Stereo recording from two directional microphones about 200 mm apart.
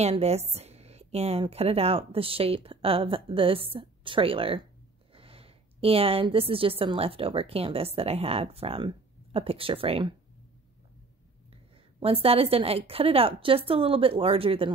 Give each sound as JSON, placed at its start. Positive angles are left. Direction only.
{"t": 0.0, "sound": "a woman's voice", "side_deg": -30}
{"t": 11.5, "sound": "a woman's voice", "side_deg": -30}